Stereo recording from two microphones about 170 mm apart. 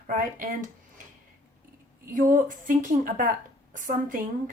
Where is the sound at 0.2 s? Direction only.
50° right (ahead or behind).